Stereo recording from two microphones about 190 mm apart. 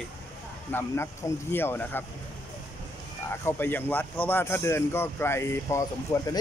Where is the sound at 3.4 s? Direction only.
10° left (ahead or behind).